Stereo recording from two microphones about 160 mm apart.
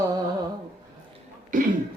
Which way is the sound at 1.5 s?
55° right (ahead or behind).